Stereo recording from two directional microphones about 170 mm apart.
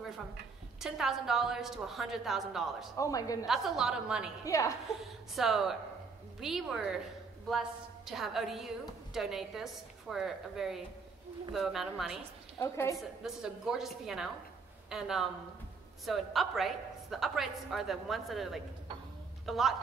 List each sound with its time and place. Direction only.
0.7 s a woman's voice: centre (ahead or behind)
3.0 s a woman's voice: 20° left (ahead or behind)
3.4 s a woman's voice: centre (ahead or behind)
4.5 s a woman's voice: 20° left (ahead or behind)
5.0 s a woman's voice: centre (ahead or behind)
12.5 s a woman's voice: 15° left (ahead or behind)
12.9 s a woman's voice: 5° right (ahead or behind)